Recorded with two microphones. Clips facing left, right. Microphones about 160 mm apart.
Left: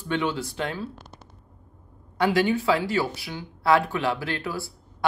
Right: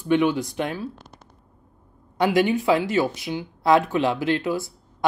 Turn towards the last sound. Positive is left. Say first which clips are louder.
# right 7 dB
turn(degrees=-20)  # may be behind; listen again after turning